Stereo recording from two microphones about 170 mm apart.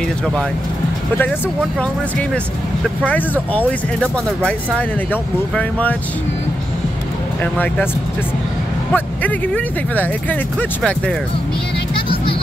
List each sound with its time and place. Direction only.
1.8 s speech: 5° left (ahead or behind)
3.5 s speech: 5° left (ahead or behind)
7.5 s speech: 10° left (ahead or behind)
8.9 s speech: 10° left (ahead or behind)
11.9 s music: 30° left (ahead or behind)